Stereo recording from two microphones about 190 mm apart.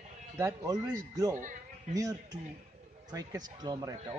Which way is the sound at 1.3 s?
45° right (ahead or behind).